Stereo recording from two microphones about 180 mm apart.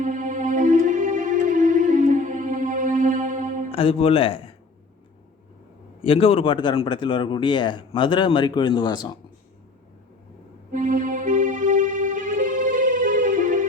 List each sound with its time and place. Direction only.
0.0 s music: 45° right (ahead or behind)
3.7 s speech: 30° left (ahead or behind)
6.0 s speech: 30° left (ahead or behind)
10.7 s music: 45° right (ahead or behind)